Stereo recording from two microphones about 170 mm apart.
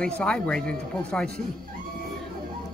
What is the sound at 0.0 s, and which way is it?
Speech, 5° left (ahead or behind).